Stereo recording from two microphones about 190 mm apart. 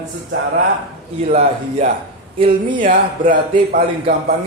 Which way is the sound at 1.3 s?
40° right (ahead or behind).